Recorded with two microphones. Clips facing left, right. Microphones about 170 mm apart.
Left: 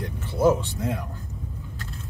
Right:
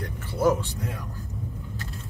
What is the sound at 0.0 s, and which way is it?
Vehicle, 20° left (ahead or behind).